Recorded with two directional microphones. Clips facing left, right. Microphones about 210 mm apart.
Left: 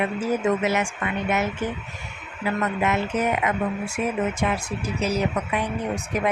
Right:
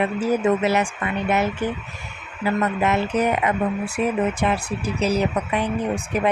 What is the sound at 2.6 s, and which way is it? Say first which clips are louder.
Speech: right 1 dB; 35° right (ahead or behind).